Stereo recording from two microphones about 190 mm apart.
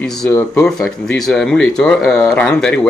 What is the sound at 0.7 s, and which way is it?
Speech, 5° left (ahead or behind).